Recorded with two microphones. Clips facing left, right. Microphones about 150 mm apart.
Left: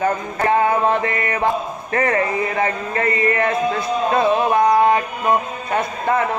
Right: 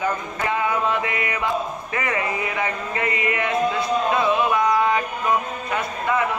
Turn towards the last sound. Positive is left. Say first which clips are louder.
# left 4 dB
turn(degrees=40)  # may be behind; listen again after turning